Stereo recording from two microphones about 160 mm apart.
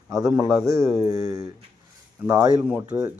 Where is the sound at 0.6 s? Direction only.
20° right (ahead or behind).